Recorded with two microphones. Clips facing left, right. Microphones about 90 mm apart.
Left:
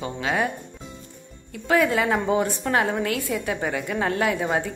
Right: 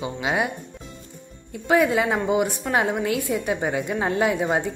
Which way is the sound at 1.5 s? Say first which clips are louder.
Right 1 dB; 20° right (ahead or behind).